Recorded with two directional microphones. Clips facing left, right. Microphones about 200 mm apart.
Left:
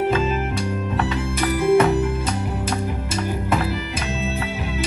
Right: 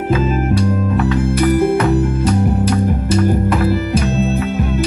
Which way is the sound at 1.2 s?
55° right (ahead or behind).